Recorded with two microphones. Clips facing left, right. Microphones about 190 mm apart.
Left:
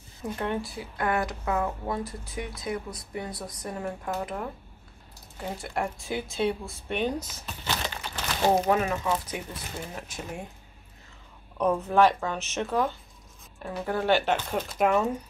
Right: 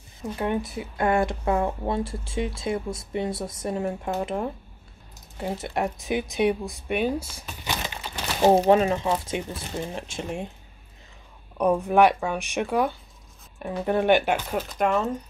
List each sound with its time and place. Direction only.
0.4 s speech: 15° right (ahead or behind)
8.5 s speech: 30° right (ahead or behind)
11.5 s speech: 15° right (ahead or behind)
14.7 s speech: centre (ahead or behind)